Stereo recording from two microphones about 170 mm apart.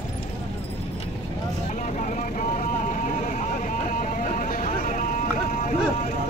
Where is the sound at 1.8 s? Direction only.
50° left (ahead or behind).